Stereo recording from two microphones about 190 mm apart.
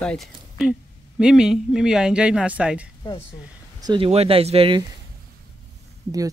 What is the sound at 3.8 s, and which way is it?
Speech, 25° right (ahead or behind).